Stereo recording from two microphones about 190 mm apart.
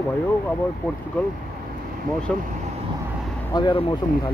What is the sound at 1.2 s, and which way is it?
Speech, 5° left (ahead or behind).